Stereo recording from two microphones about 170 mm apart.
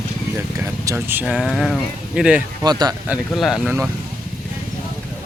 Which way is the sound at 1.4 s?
Centre (ahead or behind).